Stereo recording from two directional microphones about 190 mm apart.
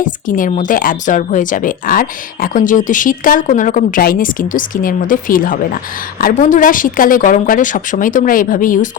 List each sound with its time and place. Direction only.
0.0 s a woman's voice: 45° left (ahead or behind)